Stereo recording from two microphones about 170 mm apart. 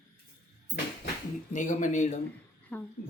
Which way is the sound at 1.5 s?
50° left (ahead or behind).